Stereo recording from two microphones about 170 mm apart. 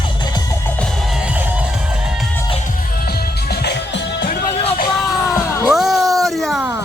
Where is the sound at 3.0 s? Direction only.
65° left (ahead or behind).